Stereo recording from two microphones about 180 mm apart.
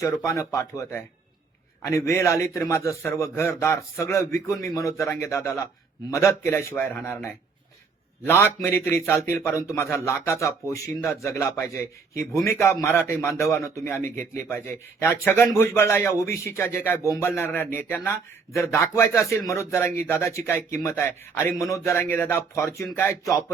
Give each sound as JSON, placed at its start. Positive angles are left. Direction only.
{"t": 0.0, "sound": "a man's voice", "side_deg": 15}